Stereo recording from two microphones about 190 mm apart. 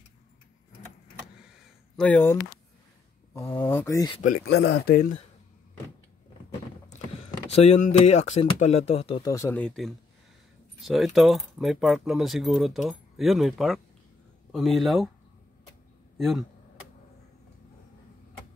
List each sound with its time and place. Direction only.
2.0 s speech: 5° left (ahead or behind)
3.3 s speech: 10° left (ahead or behind)
4.3 s speech: 60° left (ahead or behind)
6.9 s speech: 35° left (ahead or behind)
9.3 s speech: 15° left (ahead or behind)
16.2 s speech: centre (ahead or behind)